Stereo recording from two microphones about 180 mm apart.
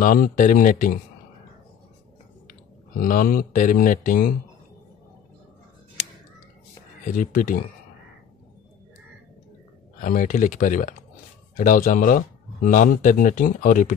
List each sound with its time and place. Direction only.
0.0 s speech: 50° left (ahead or behind)
3.0 s speech: 50° left (ahead or behind)
7.1 s speech: 45° left (ahead or behind)
9.9 s speech: 45° left (ahead or behind)